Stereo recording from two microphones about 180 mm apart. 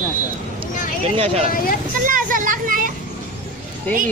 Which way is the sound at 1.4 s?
50° left (ahead or behind).